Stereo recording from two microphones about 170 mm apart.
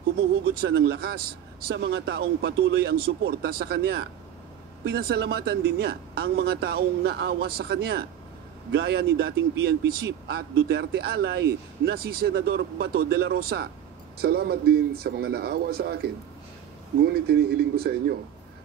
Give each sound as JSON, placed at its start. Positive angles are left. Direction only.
{"t": 0.6, "sound": "speech", "side_deg": -75}